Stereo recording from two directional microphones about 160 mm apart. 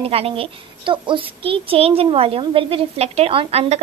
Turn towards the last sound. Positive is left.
turn(degrees=-35)  # may be behind; listen again after turning